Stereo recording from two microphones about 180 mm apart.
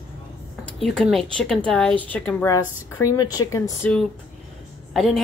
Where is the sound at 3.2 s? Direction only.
20° left (ahead or behind).